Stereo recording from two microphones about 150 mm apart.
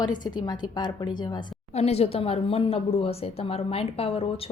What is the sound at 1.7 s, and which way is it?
Speech, 45° left (ahead or behind).